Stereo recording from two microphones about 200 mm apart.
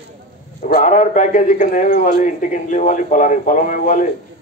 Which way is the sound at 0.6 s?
40° left (ahead or behind).